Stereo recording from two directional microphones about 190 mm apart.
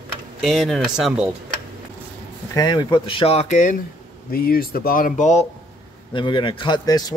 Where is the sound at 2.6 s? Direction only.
20° left (ahead or behind); by 3.8 s 40° left (ahead or behind).